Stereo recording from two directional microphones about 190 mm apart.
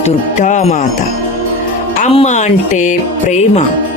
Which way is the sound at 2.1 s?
40° left (ahead or behind).